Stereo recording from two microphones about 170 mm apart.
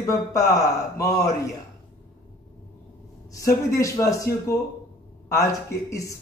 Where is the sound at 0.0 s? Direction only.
15° left (ahead or behind).